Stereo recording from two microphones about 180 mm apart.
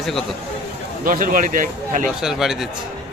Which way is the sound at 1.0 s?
50° right (ahead or behind).